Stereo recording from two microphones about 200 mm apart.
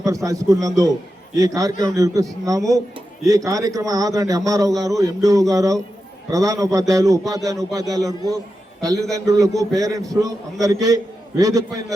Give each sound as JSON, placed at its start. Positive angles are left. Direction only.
{"t": 0.0, "sound": "a man's voice", "side_deg": -15}
{"t": 3.2, "sound": "a man's voice", "side_deg": -15}